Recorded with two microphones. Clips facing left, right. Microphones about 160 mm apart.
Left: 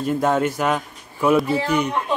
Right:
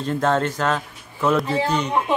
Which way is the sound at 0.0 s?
10° left (ahead or behind).